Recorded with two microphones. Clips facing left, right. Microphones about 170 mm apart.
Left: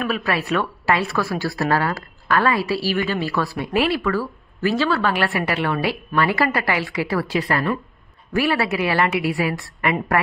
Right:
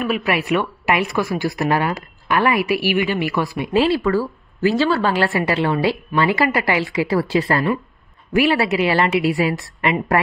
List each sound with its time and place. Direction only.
0.0 s speech: 15° right (ahead or behind)